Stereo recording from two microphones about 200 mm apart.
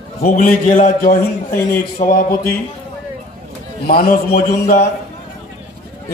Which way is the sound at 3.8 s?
50° left (ahead or behind).